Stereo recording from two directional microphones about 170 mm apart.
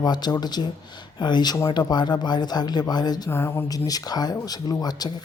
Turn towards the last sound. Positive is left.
turn(degrees=25)  # may be behind; listen again after turning